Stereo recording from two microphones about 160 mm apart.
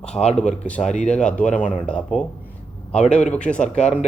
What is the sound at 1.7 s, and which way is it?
Speech, 5° left (ahead or behind).